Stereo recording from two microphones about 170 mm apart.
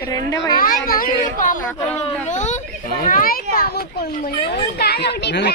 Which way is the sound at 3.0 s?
55° left (ahead or behind).